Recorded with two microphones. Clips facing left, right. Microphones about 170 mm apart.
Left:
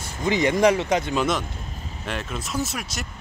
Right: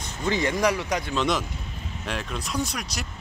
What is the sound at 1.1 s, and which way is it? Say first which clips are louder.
Speech: left 2 dB; centre (ahead or behind).